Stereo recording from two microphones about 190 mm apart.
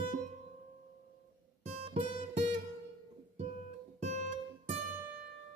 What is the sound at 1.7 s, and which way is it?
Guitar, 35° right (ahead or behind).